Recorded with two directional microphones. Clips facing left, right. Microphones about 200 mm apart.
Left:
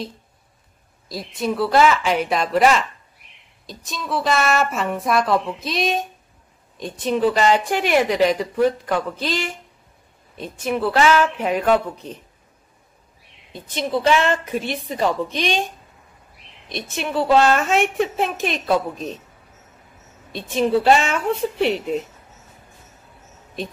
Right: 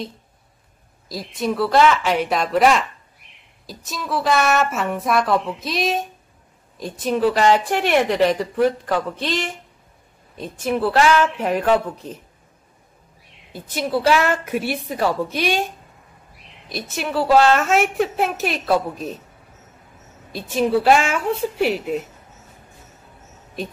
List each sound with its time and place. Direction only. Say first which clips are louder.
1.0 s a woman's voice: right 1 dB; centre (ahead or behind)
13.5 s a woman's voice: right 1 dB; 5° right (ahead or behind)
16.6 s a woman's voice: even; 5° right (ahead or behind)
20.3 s a woman's voice: even; 5° right (ahead or behind)